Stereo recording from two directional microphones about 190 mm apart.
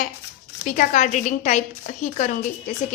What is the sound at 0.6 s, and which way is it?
A woman's voice, 45° left (ahead or behind).